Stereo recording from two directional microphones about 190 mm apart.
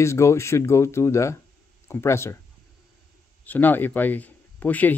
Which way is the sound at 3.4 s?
10° left (ahead or behind).